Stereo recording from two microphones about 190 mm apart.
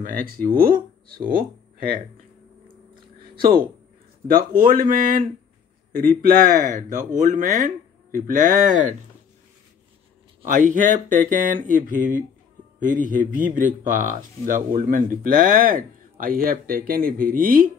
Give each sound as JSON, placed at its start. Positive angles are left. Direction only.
{"t": 0.0, "sound": "speech", "side_deg": -50}
{"t": 4.3, "sound": "speech", "side_deg": -45}
{"t": 10.4, "sound": "speech", "side_deg": -45}